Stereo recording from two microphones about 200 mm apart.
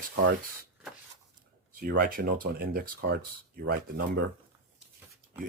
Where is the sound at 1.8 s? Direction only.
50° right (ahead or behind).